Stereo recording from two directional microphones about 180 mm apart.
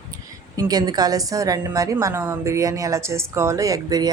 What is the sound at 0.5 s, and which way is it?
A woman's voice, 20° right (ahead or behind).